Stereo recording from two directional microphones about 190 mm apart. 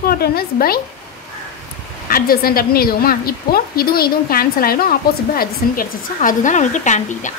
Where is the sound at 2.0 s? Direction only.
50° left (ahead or behind).